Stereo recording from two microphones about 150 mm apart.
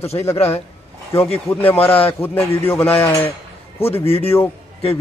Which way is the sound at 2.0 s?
15° left (ahead or behind).